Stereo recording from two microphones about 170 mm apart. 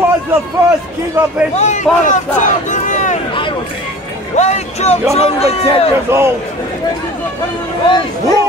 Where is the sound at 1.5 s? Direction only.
45° left (ahead or behind).